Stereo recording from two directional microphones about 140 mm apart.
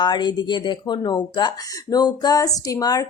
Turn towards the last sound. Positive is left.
turn(degrees=25)  # may be behind; listen again after turning